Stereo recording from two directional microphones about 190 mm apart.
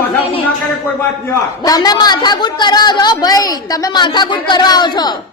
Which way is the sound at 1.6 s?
20° left (ahead or behind).